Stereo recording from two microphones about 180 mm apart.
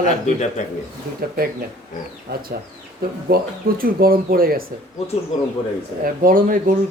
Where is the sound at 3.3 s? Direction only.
55° right (ahead or behind).